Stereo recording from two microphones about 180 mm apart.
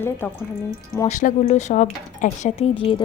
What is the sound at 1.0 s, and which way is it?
Speech, 40° left (ahead or behind).